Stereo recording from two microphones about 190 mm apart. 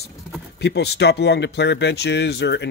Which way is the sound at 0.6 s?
60° left (ahead or behind).